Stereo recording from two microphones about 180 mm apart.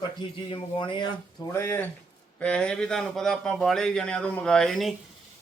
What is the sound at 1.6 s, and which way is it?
A man's voice, 10° left (ahead or behind).